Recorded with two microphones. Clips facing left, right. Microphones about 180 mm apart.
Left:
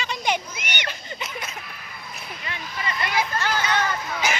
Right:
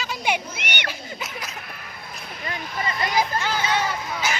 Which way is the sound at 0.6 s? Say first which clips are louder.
Right 1 dB; 60° right (ahead or behind).